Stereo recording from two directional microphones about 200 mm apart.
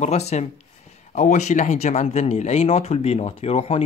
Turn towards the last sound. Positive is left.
turn(degrees=30)  # may be behind; listen again after turning